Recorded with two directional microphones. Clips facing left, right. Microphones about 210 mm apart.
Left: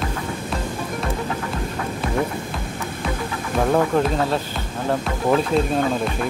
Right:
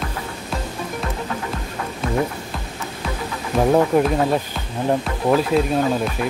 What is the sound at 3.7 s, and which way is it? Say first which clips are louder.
Speech: right 3 dB; 10° right (ahead or behind).